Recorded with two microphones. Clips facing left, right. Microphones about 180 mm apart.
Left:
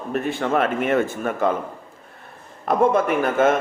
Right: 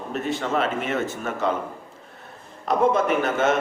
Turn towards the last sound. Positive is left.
turn(degrees=50)  # may be behind; listen again after turning